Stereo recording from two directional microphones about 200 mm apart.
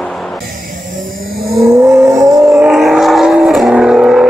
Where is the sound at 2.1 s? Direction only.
15° right (ahead or behind).